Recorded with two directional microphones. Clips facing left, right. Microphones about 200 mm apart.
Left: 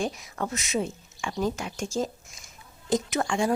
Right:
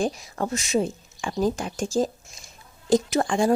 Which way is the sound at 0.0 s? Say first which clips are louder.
Right 4 dB; 35° right (ahead or behind).